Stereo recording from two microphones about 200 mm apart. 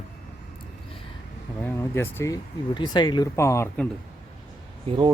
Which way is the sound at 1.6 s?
10° left (ahead or behind).